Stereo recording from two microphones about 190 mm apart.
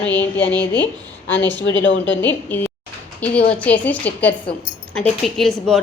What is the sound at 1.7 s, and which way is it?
Speech, 75° left (ahead or behind).